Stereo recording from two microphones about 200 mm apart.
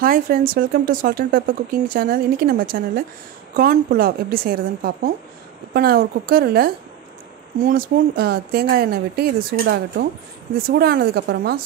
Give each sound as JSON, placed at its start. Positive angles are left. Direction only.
{"t": 0.0, "sound": "speech", "side_deg": -45}